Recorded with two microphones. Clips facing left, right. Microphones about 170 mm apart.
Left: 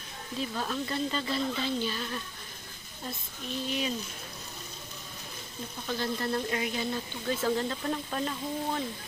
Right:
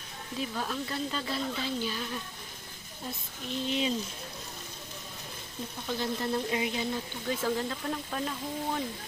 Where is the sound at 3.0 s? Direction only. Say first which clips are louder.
Even; 20° right (ahead or behind).